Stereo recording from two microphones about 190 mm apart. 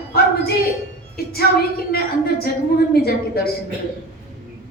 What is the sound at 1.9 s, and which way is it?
Speech, 55° left (ahead or behind).